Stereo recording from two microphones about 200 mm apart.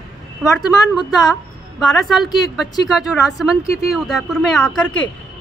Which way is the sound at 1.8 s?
Centre (ahead or behind).